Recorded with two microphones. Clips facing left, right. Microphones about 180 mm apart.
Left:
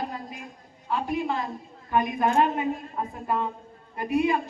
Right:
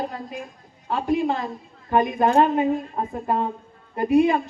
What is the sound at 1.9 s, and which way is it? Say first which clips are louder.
A woman's voice: right 5 dB; 30° right (ahead or behind).